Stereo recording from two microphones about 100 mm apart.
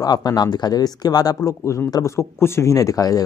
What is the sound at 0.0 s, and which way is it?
Speech, 40° left (ahead or behind).